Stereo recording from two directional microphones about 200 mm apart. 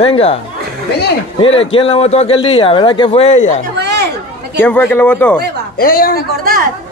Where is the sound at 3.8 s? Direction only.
55° right (ahead or behind).